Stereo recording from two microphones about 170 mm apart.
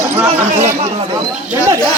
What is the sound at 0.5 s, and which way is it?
Speech, 40° right (ahead or behind).